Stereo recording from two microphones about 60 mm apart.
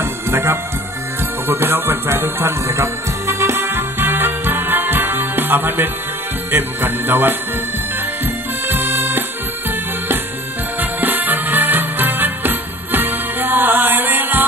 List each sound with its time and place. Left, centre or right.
0.0 s music: right
8.6 s music: right
10.8 s music: right